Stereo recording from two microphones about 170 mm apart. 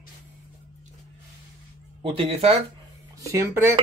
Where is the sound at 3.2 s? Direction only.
15° right (ahead or behind).